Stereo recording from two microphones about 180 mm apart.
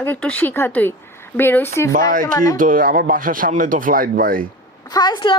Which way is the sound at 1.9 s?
50° right (ahead or behind).